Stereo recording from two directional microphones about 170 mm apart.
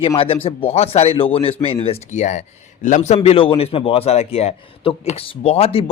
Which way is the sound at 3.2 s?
30° left (ahead or behind).